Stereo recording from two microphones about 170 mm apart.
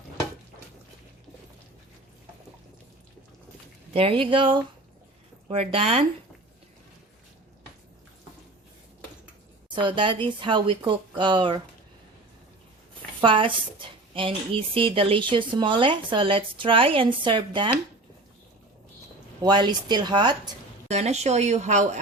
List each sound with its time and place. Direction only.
3.9 s a woman's voice: 30° right (ahead or behind)
9.6 s a woman's voice: 30° right (ahead or behind)
13.2 s a woman's voice: 30° right (ahead or behind)
19.4 s a woman's voice: 25° right (ahead or behind)
20.8 s a woman's voice: 40° right (ahead or behind)